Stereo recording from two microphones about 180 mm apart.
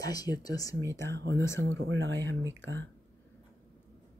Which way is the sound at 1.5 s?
90° right.